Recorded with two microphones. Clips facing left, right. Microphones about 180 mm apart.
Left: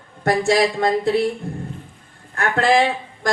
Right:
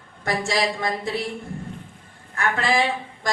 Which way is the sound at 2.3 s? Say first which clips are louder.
Left 5 dB; 55° left (ahead or behind).